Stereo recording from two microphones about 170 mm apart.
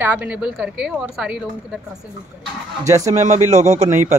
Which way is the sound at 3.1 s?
40° right (ahead or behind).